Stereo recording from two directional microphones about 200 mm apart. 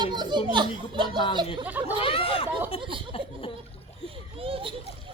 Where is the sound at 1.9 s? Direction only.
30° left (ahead or behind).